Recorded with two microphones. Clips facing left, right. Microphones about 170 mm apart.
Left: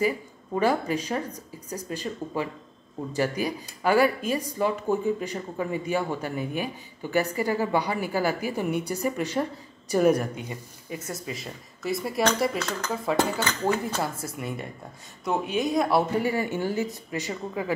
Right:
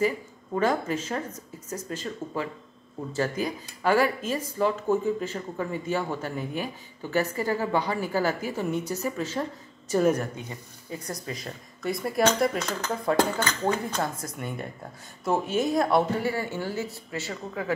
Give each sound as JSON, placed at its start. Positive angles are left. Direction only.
{"t": 0.6, "sound": "speech", "side_deg": 10}
{"t": 11.1, "sound": "speech", "side_deg": 5}
{"t": 16.2, "sound": "speech", "side_deg": 15}